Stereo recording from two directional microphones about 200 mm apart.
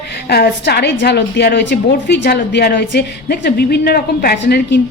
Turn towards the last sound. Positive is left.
turn(degrees=50)  # may be behind; listen again after turning